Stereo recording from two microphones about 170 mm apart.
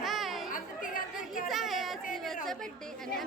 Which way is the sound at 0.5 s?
55° left (ahead or behind).